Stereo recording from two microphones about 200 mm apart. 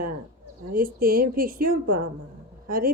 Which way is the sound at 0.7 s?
45° right (ahead or behind).